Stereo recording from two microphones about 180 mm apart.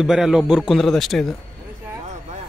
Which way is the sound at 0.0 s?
Centre (ahead or behind).